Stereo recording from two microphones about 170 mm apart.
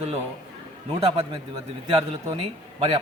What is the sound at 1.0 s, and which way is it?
Speech, 35° right (ahead or behind).